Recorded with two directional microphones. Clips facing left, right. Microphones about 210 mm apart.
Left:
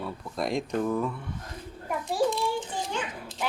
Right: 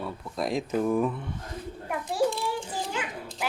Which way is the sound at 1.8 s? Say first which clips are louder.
Even; centre (ahead or behind).